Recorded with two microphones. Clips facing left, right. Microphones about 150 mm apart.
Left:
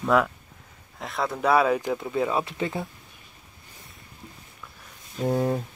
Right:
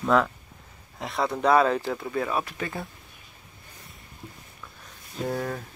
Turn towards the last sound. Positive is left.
turn(degrees=25)  # may be behind; listen again after turning